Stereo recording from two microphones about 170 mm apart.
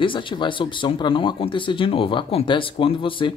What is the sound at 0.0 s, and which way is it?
Speech, 30° left (ahead or behind).